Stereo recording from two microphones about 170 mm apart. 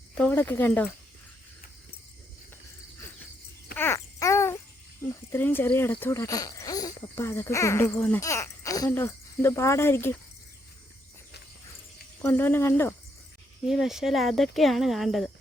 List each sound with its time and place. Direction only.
0.2 s speech: 10° left (ahead or behind)
3.8 s wail: 15° left (ahead or behind)
5.3 s speech: 10° left (ahead or behind)
12.2 s speech: 10° left (ahead or behind)
13.7 s speech: centre (ahead or behind)